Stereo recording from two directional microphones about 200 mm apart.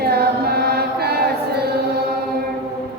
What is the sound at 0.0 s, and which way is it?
Chant, 50° right (ahead or behind).